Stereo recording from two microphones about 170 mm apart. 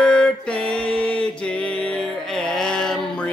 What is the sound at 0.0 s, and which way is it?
Mantra, 5° left (ahead or behind).